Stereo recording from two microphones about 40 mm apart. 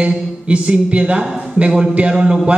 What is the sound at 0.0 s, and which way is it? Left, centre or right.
A man's voice, right.